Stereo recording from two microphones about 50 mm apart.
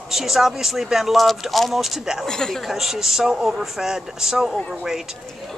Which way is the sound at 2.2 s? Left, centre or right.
Centre.